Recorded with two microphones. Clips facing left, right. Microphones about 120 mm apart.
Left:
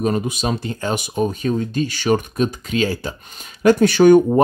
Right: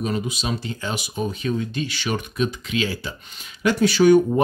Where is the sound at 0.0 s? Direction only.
45° left (ahead or behind).